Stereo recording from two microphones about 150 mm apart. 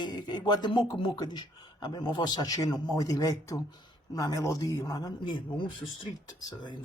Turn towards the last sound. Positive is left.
turn(degrees=25)  # may be behind; listen again after turning